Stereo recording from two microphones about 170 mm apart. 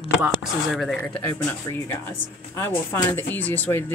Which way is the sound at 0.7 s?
Centre (ahead or behind).